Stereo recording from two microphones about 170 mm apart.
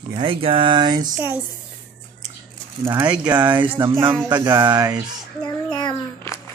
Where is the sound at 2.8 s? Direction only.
20° right (ahead or behind).